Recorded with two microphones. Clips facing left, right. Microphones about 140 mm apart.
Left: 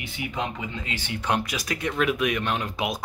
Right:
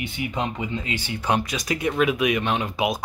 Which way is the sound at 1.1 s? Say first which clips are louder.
Right 2 dB; 5° right (ahead or behind).